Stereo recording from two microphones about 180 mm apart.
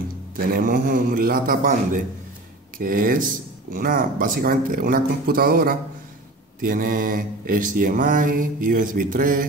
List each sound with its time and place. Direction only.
0.5 s mantra: 50° right (ahead or behind)